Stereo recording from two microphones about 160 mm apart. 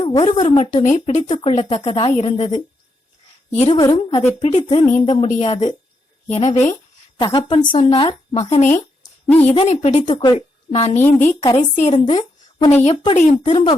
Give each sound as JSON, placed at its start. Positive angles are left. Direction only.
{"t": 0.0, "sound": "a woman's voice", "side_deg": 25}
{"t": 0.5, "sound": "speech", "side_deg": 50}
{"t": 1.4, "sound": "speech", "side_deg": 35}
{"t": 3.7, "sound": "a woman's voice", "side_deg": 25}
{"t": 4.4, "sound": "speech", "side_deg": 40}
{"t": 7.2, "sound": "speech", "side_deg": 30}
{"t": 9.2, "sound": "a woman's voice", "side_deg": 10}
{"t": 9.5, "sound": "speech", "side_deg": 40}
{"t": 10.1, "sound": "speech", "side_deg": 30}
{"t": 12.0, "sound": "a sound", "side_deg": 30}
{"t": 12.7, "sound": "speech", "side_deg": 40}